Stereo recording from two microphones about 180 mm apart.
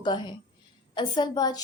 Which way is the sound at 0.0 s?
25° left (ahead or behind).